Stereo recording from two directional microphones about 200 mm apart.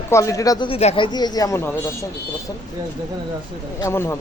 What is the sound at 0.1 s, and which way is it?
Speech, 15° left (ahead or behind).